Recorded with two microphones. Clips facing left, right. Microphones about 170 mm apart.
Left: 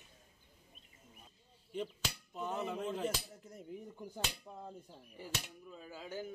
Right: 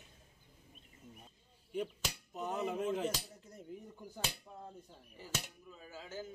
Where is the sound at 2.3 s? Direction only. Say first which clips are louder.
Right 2 dB; 15° right (ahead or behind).